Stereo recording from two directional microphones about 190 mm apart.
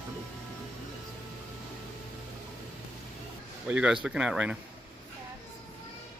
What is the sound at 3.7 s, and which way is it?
Speech, 5° right (ahead or behind).